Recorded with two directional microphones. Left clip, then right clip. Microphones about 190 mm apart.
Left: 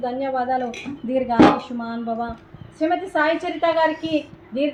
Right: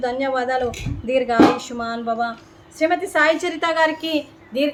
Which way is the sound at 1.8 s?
15° right (ahead or behind).